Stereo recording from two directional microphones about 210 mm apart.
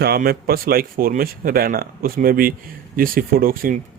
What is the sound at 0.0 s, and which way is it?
Speech, 45° right (ahead or behind).